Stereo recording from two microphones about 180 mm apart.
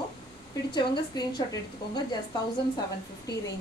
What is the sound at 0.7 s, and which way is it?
Speech, 25° left (ahead or behind).